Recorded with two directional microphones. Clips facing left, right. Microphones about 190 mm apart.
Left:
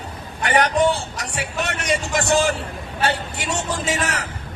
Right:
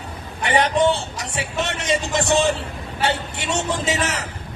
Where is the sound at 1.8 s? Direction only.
Centre (ahead or behind).